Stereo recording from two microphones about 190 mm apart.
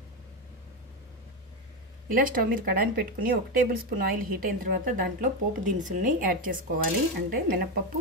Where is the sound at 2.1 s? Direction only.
45° right (ahead or behind).